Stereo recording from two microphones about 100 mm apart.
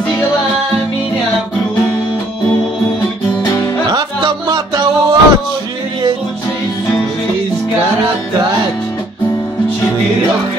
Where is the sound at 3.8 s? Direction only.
45° right (ahead or behind).